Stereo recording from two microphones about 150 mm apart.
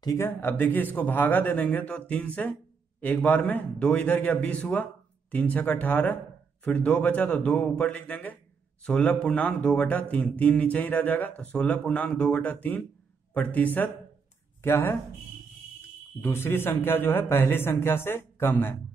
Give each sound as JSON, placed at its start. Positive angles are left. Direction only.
{"t": 0.0, "sound": "speech", "side_deg": 25}
{"t": 0.4, "sound": "a man's voice", "side_deg": 10}
{"t": 16.2, "sound": "a man's voice", "side_deg": 15}